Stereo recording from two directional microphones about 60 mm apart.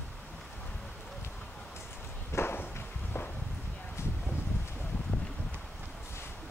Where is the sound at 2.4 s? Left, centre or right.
Left.